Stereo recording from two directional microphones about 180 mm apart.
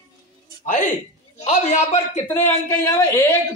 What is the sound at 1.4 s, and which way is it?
Speech, 40° left (ahead or behind).